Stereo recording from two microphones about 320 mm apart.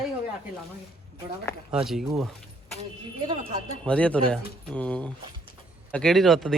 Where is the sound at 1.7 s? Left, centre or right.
Centre.